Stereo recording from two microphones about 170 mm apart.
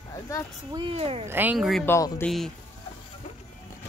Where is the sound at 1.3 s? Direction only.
10° right (ahead or behind).